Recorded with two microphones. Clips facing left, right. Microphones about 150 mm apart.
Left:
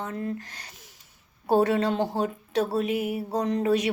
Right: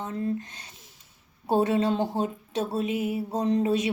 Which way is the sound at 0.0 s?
25° right (ahead or behind).